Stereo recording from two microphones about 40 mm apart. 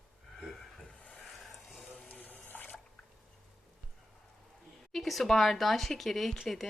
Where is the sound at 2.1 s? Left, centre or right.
Left.